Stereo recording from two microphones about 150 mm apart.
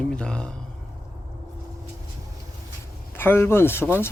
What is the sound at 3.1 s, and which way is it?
Speech, 15° left (ahead or behind).